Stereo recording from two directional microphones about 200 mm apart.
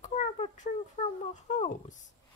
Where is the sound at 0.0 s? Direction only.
35° left (ahead or behind).